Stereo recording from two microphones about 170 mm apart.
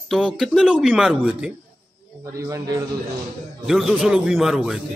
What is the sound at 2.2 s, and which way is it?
Speech, 20° right (ahead or behind).